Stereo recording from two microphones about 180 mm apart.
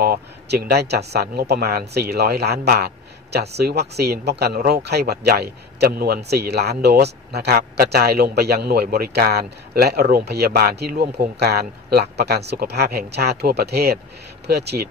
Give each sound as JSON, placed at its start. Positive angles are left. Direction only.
{"t": 0.0, "sound": "speech", "side_deg": -60}